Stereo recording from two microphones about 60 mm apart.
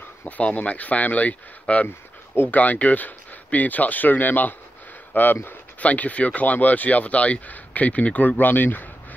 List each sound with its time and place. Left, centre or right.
0.2 s speech: left